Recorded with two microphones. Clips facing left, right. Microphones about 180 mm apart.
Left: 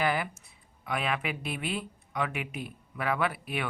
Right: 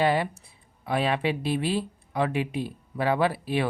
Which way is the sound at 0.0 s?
30° right (ahead or behind).